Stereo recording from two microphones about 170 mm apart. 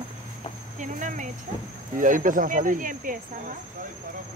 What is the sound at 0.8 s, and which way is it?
Speech, 50° right (ahead or behind).